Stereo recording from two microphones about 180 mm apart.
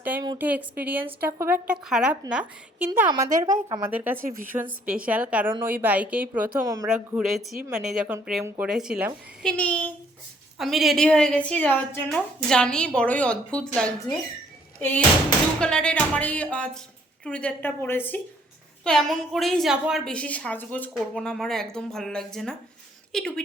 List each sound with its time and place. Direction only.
0.0 s a sound: 10° right (ahead or behind)
0.3 s a woman's voice: 10° right (ahead or behind)
6.8 s a woman's voice: 5° right (ahead or behind)
9.5 s music: 5° left (ahead or behind)
10.6 s a woman's voice: centre (ahead or behind)
15.6 s music: 5° left (ahead or behind)
18.9 s a woman's voice: centre (ahead or behind)